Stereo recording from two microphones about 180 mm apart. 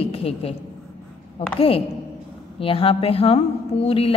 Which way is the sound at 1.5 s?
30° left (ahead or behind).